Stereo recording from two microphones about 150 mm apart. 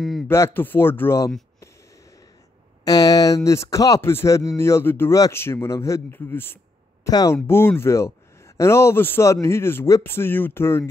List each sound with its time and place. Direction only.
0.3 s speech: 15° left (ahead or behind)
2.8 s speech: 25° left (ahead or behind)
7.1 s speech: 25° left (ahead or behind)